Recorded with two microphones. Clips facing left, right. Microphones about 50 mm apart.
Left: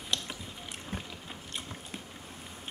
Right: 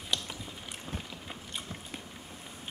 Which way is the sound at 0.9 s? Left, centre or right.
Centre.